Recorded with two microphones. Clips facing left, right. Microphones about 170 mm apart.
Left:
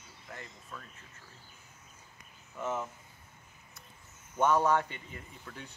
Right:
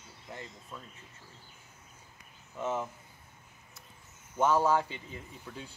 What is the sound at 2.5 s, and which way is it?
Speech, 15° right (ahead or behind).